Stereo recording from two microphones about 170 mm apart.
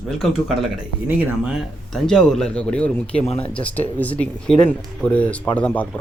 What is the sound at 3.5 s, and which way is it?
Speech, 10° left (ahead or behind).